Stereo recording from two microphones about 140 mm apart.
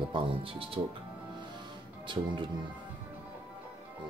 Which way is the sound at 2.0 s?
35° right (ahead or behind).